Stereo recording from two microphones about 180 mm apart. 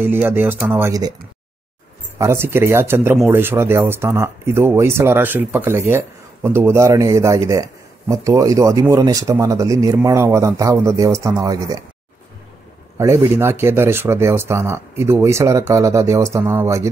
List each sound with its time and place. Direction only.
0.0 s speech: 10° right (ahead or behind)
2.1 s speech: 15° right (ahead or behind)
12.9 s speech: 15° right (ahead or behind)